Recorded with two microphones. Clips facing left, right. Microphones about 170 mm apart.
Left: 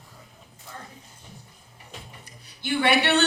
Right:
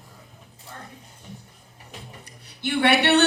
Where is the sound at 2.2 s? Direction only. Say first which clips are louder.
Right 8 dB; 65° right (ahead or behind).